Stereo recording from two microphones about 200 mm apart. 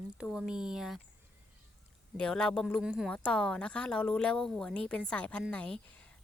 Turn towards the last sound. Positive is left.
turn(degrees=5)  # may be behind; listen again after turning